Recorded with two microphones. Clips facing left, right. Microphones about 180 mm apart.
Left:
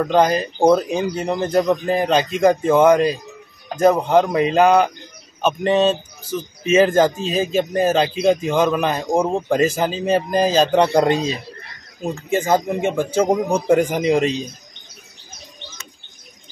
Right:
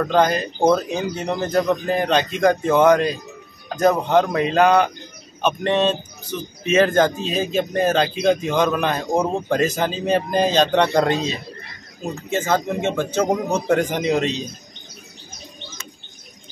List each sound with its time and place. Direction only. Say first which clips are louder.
0.0 s speech: left 2 dB; 10° left (ahead or behind)
12.3 s speech: left 3 dB; 10° left (ahead or behind)